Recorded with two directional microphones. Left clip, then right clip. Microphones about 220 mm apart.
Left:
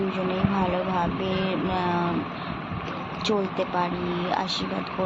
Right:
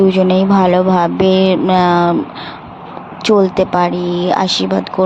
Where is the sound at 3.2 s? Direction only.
50° right (ahead or behind).